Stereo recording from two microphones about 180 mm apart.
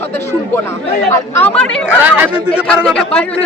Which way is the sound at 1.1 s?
10° left (ahead or behind).